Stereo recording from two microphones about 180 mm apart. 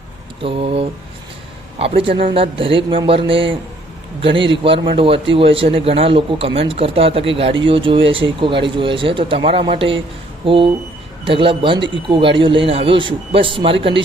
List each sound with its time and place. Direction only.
0.4 s a man's voice: 30° right (ahead or behind)